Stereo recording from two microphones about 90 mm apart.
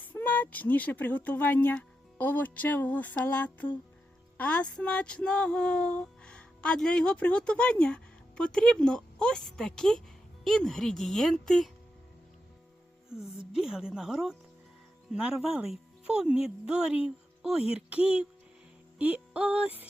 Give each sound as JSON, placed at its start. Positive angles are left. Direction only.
{"t": 0.0, "sound": "a woman's voice", "side_deg": 20}
{"t": 13.4, "sound": "speech", "side_deg": -10}